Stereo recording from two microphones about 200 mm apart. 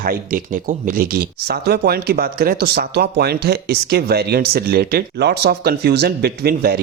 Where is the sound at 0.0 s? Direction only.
45° right (ahead or behind).